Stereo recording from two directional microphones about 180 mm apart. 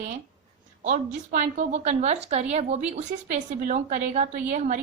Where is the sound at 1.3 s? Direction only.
40° right (ahead or behind).